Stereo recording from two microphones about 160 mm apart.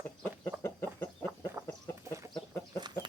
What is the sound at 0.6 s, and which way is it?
Chicken, 15° left (ahead or behind).